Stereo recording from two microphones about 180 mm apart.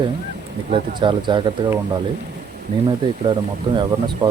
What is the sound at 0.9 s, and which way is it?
Speech, 25° right (ahead or behind).